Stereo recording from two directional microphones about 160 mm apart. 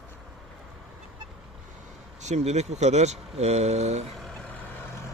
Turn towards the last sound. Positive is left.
turn(degrees=10)  # may be behind; listen again after turning